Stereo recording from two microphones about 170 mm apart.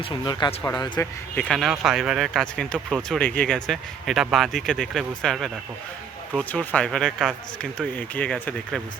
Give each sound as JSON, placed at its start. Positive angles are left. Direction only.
{"t": 0.0, "sound": "speech", "side_deg": 25}
{"t": 1.4, "sound": "speech", "side_deg": 5}